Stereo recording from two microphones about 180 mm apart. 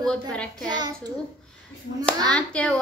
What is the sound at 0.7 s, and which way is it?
Speech, 20° right (ahead or behind).